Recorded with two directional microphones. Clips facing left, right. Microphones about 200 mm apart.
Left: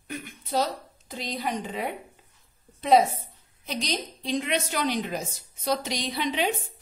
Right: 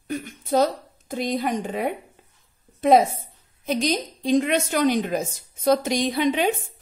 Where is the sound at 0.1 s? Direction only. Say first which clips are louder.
Right 7 dB; 45° right (ahead or behind).